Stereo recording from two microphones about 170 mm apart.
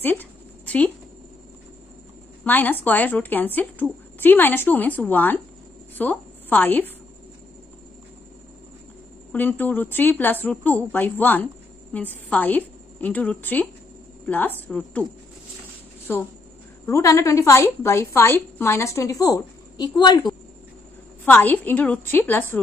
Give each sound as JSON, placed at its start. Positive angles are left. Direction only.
{"t": 0.0, "sound": "a sound", "side_deg": 10}
{"t": 2.4, "sound": "a woman's voice", "side_deg": 10}
{"t": 9.3, "sound": "a woman's voice", "side_deg": 10}
{"t": 16.1, "sound": "a woman's voice", "side_deg": 15}
{"t": 21.3, "sound": "a woman's voice", "side_deg": 10}